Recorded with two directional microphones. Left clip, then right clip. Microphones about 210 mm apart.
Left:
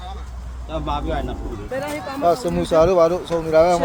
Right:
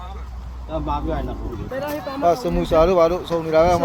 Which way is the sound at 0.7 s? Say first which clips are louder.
Even; 15° right (ahead or behind).